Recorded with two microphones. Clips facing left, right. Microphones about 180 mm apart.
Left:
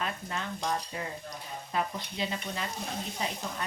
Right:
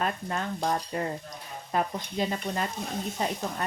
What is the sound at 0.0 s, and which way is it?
Stir, 45° right (ahead or behind).